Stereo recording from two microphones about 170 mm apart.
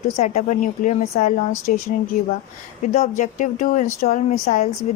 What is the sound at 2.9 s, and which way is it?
Speech, 45° left (ahead or behind).